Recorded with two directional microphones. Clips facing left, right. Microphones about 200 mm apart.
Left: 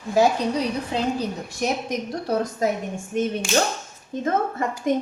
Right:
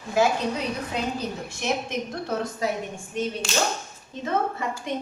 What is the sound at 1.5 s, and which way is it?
A woman's voice, 40° left (ahead or behind).